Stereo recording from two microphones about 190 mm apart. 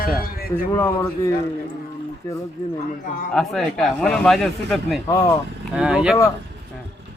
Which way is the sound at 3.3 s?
Centre (ahead or behind).